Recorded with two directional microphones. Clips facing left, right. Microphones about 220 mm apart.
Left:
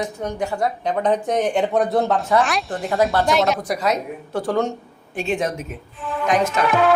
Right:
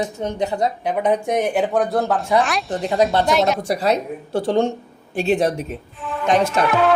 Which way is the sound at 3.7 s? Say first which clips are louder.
Right 2 dB; 30° right (ahead or behind).